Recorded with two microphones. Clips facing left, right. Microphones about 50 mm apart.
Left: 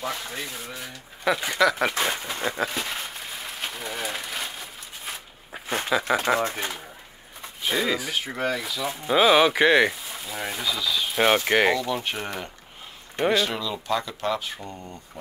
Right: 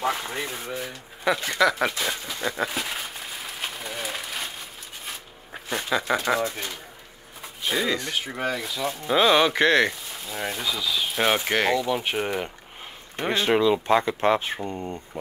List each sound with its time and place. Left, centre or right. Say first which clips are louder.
0.0 s speech: right 4 dB; right
1.2 s speech: even; centre
2.4 s a sound: right 1 dB; centre
5.9 s speech: left 1 dB; centre
6.5 s speech: left 3 dB; left
7.6 s speech: even; centre
11.7 s speech: right 2 dB; centre
13.3 s speech: right 7 dB; right